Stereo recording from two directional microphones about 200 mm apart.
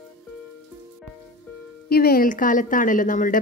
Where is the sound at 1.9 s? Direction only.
50° left (ahead or behind).